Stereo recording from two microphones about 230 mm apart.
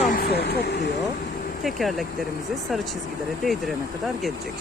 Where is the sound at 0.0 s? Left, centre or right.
Left.